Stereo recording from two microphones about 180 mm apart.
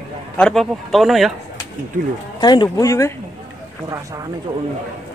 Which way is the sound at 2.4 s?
25° left (ahead or behind).